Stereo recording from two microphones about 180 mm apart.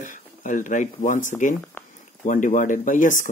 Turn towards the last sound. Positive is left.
turn(degrees=45)  # may be behind; listen again after turning